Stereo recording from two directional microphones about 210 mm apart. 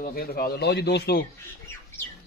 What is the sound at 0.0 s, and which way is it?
Speech, 45° left (ahead or behind).